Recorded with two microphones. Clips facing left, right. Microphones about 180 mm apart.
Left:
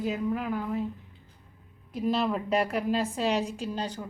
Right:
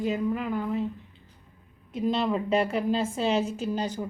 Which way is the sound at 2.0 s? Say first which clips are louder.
Right 1 dB; centre (ahead or behind).